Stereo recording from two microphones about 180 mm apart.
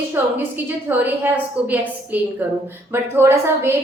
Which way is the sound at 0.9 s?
10° right (ahead or behind).